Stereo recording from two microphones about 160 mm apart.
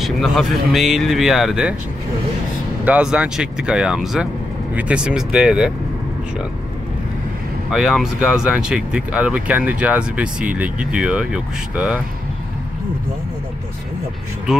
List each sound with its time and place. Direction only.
0.0 s speech: centre (ahead or behind)
2.8 s speech: 5° right (ahead or behind)
7.7 s speech: 5° right (ahead or behind)